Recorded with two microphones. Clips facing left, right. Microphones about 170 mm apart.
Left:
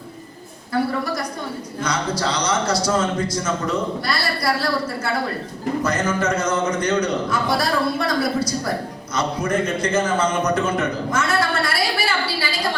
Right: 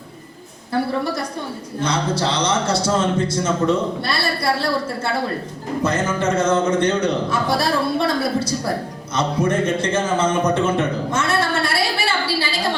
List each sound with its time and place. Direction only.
1.8 s a man's voice: 25° right (ahead or behind)